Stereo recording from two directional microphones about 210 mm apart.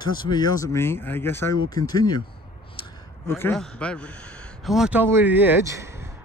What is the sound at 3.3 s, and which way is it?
A man's voice, 10° left (ahead or behind).